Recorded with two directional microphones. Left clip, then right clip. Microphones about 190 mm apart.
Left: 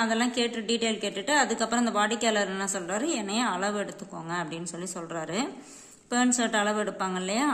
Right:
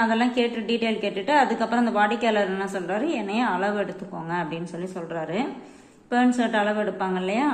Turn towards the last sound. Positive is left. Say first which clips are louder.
# right 4 dB
turn(degrees=30)  # may be behind; listen again after turning